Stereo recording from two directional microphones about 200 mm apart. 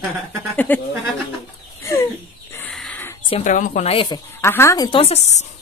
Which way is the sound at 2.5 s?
5° left (ahead or behind).